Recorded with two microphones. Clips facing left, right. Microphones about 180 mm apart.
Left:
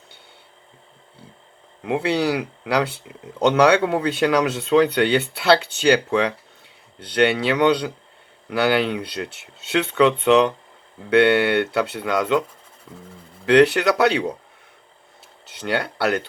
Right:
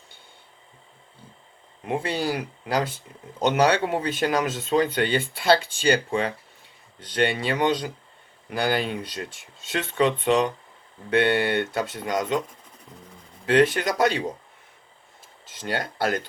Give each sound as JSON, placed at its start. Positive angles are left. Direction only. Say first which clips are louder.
{"t": 1.8, "sound": "speech", "louder": "left 5 dB", "side_deg": 70}
{"t": 13.4, "sound": "speech", "louder": "left 5 dB", "side_deg": 75}
{"t": 15.4, "sound": "speech", "louder": "left 5 dB", "side_deg": 70}